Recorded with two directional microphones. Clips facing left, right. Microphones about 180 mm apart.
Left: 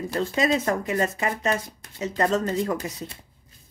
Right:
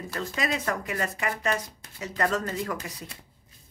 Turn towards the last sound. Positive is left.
turn(degrees=25)  # may be behind; listen again after turning